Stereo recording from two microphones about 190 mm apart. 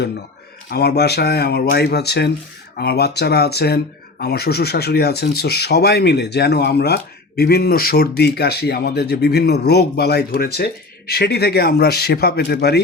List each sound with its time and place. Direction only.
0.7 s speech: 60° left (ahead or behind)